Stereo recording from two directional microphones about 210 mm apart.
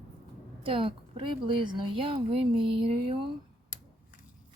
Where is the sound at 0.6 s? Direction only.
25° right (ahead or behind).